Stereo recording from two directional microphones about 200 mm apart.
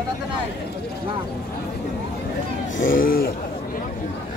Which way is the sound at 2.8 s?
45° left (ahead or behind).